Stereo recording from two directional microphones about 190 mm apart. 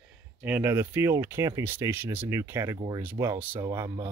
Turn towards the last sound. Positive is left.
turn(degrees=-15)  # may be behind; listen again after turning